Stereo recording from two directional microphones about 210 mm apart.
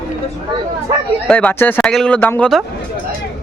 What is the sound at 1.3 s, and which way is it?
A man's voice, 5° left (ahead or behind).